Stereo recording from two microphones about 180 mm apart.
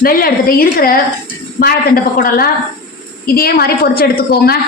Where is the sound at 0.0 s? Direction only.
55° left (ahead or behind).